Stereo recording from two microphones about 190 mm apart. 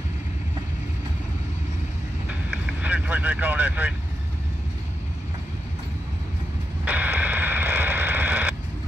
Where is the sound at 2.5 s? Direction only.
5° right (ahead or behind).